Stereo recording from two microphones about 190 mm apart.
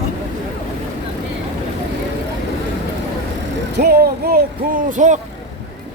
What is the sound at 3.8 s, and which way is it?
Music, 55° right (ahead or behind).